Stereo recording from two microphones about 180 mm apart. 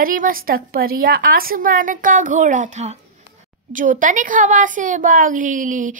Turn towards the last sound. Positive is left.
turn(degrees=-45)  # may be behind; listen again after turning